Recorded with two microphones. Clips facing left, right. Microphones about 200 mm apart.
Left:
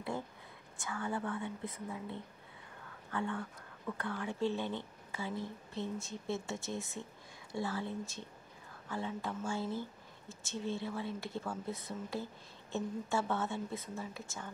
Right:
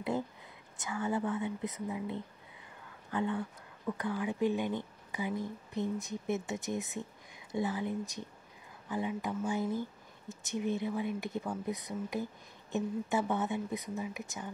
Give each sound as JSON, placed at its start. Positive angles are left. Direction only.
{"t": 0.8, "sound": "a woman's voice", "side_deg": -20}